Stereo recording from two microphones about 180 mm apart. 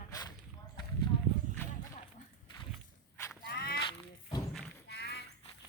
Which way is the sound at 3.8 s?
30° left (ahead or behind).